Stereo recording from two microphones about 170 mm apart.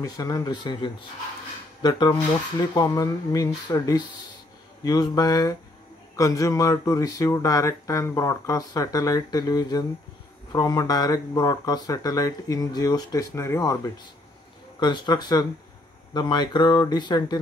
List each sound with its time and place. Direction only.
0.0 s speech: 20° left (ahead or behind)